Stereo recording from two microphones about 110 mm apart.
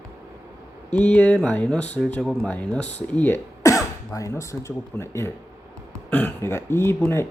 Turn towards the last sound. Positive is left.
turn(degrees=20)  # may be behind; listen again after turning